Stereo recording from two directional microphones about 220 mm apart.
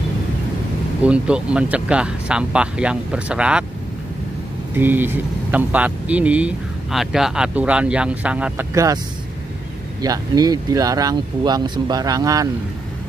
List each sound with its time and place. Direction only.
1.0 s speech: 5° right (ahead or behind)
4.7 s speech: 10° right (ahead or behind)
10.0 s speech: 15° right (ahead or behind)